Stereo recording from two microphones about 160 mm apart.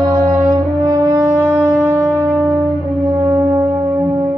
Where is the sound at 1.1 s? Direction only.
10° right (ahead or behind).